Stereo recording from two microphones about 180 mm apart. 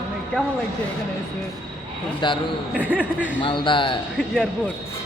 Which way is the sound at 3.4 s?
25° left (ahead or behind).